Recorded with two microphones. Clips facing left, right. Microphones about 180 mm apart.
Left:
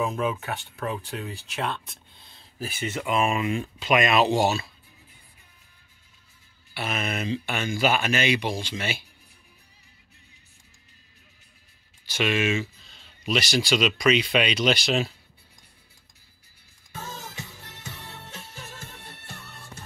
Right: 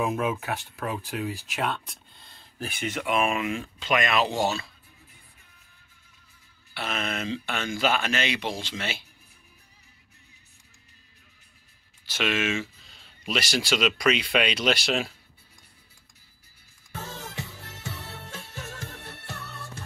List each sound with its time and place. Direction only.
0.0 s speech: 5° right (ahead or behind)
3.9 s speech: 15° left (ahead or behind)
6.7 s speech: 5° left (ahead or behind)
12.1 s speech: centre (ahead or behind)
12.8 s speech: 5° right (ahead or behind)
18.5 s music: 70° right (ahead or behind)